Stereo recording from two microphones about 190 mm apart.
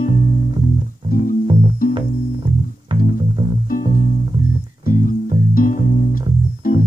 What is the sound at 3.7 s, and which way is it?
Music, 45° left (ahead or behind).